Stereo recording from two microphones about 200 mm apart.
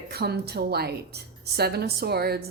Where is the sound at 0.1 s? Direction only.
55° right (ahead or behind).